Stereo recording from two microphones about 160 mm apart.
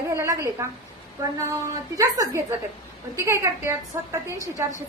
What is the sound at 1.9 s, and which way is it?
A woman's voice, 20° right (ahead or behind).